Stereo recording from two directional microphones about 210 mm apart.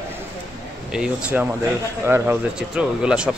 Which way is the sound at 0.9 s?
5° right (ahead or behind).